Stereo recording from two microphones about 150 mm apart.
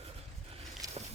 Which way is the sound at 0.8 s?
25° right (ahead or behind).